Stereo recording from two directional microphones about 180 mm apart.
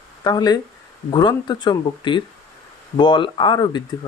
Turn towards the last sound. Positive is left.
turn(degrees=25)  # may be behind; listen again after turning